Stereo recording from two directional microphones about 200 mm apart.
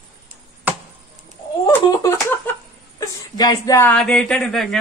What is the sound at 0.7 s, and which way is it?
Chop, 10° right (ahead or behind).